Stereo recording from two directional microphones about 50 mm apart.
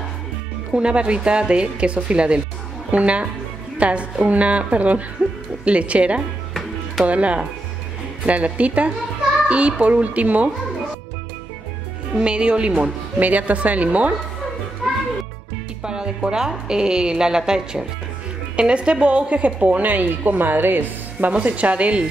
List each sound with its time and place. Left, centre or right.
0.7 s a woman's voice: right
12.2 s a woman's voice: right
15.8 s a woman's voice: centre; by 21.3 s right
21.3 s a woman's voice: right